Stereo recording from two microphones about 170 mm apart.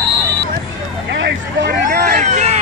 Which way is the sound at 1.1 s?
90° right.